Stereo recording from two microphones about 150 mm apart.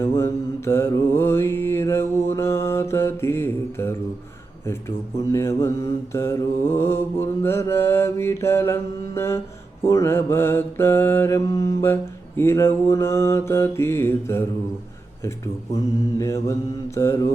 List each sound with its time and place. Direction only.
0.0 s mantra: 15° left (ahead or behind)
16.1 s mantra: 20° left (ahead or behind)